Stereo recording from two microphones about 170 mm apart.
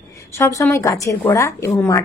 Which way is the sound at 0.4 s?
15° left (ahead or behind).